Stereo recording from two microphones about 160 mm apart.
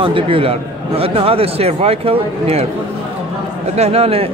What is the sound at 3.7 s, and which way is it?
Speech, 40° right (ahead or behind).